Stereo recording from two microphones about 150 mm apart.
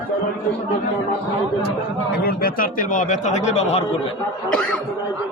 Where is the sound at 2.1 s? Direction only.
90° left; by 3.8 s 45° left (ahead or behind).